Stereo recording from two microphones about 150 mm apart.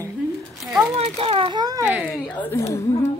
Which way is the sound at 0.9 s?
45° right (ahead or behind).